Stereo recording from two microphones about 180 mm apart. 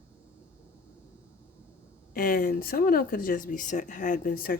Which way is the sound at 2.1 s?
50° left (ahead or behind).